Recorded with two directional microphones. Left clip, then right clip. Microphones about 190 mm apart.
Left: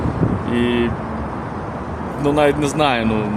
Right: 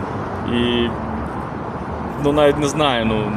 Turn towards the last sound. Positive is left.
turn(degrees=20)  # may be behind; listen again after turning